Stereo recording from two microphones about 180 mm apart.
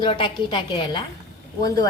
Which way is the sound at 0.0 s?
25° left (ahead or behind).